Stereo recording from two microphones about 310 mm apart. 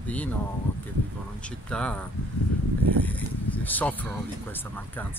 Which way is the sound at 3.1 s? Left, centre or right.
Centre.